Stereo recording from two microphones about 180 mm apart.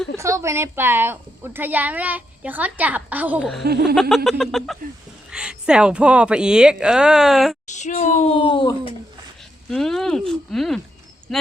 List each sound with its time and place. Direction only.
0.2 s a woman's voice: 15° right (ahead or behind)
3.6 s a sound: 65° right (ahead or behind)
4.1 s speech: centre (ahead or behind)
7.7 s speech: 40° left (ahead or behind)
9.6 s speech: centre (ahead or behind)